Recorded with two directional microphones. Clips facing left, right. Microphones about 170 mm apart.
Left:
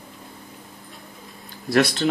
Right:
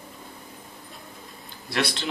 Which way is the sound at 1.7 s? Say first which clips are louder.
Left 8 dB; 45° left (ahead or behind).